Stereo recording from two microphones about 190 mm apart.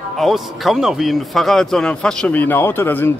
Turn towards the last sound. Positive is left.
turn(degrees=10)  # may be behind; listen again after turning